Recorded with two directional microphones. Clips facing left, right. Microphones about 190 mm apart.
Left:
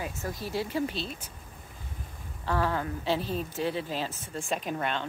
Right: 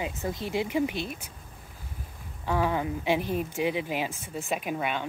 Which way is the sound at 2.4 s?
15° right (ahead or behind).